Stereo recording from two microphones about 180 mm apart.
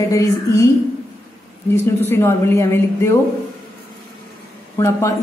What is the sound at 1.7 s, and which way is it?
A man's voice, 15° left (ahead or behind).